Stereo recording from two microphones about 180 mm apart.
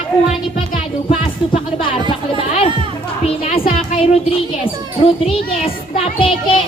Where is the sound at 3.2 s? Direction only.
30° left (ahead or behind).